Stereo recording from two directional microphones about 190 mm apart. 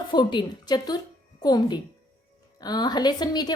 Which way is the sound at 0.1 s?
25° left (ahead or behind).